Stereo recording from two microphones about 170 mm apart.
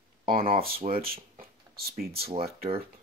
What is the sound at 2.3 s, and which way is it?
Speech, 35° right (ahead or behind).